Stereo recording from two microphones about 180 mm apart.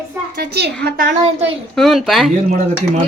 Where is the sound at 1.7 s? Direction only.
Centre (ahead or behind).